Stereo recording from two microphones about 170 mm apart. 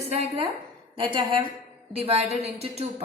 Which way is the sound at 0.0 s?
35° right (ahead or behind).